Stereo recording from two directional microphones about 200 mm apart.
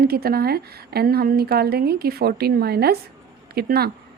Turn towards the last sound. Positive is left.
turn(degrees=-50)  # may be behind; listen again after turning